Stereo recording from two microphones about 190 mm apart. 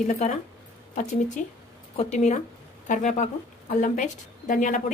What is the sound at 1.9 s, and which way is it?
Speech, 35° left (ahead or behind).